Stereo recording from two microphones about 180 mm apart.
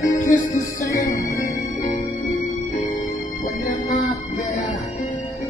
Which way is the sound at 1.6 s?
45° left (ahead or behind).